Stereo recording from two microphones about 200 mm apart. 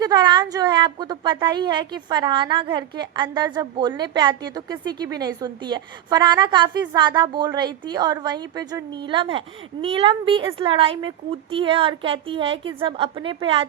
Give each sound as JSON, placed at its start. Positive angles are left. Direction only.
{"t": 0.0, "sound": "a woman's voice", "side_deg": -20}